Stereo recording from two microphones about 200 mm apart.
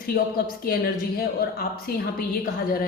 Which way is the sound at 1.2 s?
50° left (ahead or behind).